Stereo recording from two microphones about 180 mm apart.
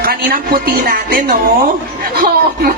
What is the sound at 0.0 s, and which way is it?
Speech, 55° right (ahead or behind).